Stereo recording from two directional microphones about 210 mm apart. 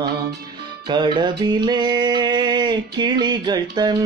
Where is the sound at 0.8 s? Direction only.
20° right (ahead or behind).